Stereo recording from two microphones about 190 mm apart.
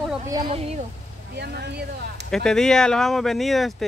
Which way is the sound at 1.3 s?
60° right (ahead or behind).